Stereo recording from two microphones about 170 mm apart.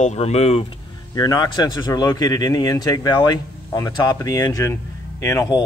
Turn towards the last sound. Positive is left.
turn(degrees=20)  # may be behind; listen again after turning